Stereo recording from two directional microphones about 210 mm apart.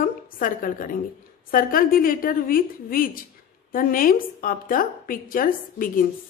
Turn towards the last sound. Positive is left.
turn(degrees=40)  # may be behind; listen again after turning